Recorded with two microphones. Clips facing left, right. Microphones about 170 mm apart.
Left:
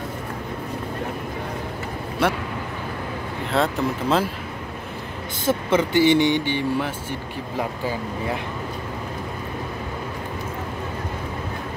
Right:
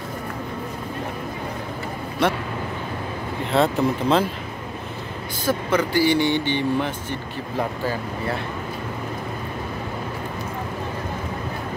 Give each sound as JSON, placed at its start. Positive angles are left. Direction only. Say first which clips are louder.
{"t": 2.2, "sound": "speech", "louder": "right 1 dB", "side_deg": 10}
{"t": 3.5, "sound": "speech", "louder": "right 3 dB", "side_deg": 0}
{"t": 5.4, "sound": "speech", "louder": "left 1 dB", "side_deg": 25}